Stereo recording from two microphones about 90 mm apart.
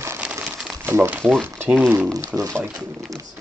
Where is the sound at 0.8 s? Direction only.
25° right (ahead or behind).